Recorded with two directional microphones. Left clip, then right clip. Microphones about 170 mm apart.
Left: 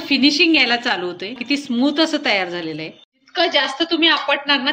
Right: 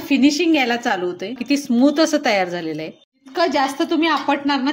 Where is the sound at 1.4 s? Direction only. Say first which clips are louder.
Right 3 dB; 65° right (ahead or behind); by 4.6 s 50° right (ahead or behind).